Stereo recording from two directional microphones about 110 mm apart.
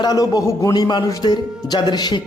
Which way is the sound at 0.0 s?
35° left (ahead or behind).